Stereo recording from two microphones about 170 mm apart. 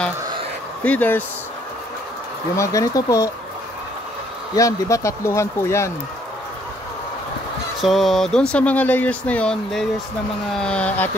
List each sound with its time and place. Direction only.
0.8 s speech: 10° left (ahead or behind)
2.5 s speech: 20° left (ahead or behind)
4.6 s speech: 20° left (ahead or behind)
7.8 s speech: centre (ahead or behind)